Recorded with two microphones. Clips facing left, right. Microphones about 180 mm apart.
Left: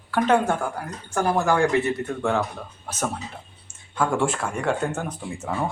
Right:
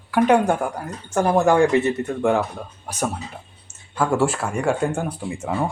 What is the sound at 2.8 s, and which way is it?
Speech, 15° right (ahead or behind).